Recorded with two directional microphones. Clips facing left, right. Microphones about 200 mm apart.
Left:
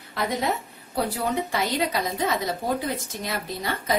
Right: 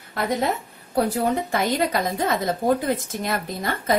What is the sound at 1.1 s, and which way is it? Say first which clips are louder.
A woman's voice: right 4 dB; 50° right (ahead or behind).